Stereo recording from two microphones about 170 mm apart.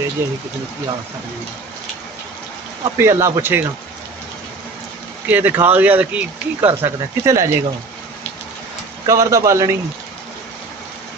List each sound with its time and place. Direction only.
2.8 s speech: 15° right (ahead or behind)
5.3 s speech: 10° right (ahead or behind)
9.0 s speech: 20° right (ahead or behind)